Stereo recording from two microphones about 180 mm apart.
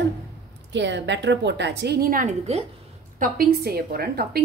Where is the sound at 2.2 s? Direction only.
35° right (ahead or behind).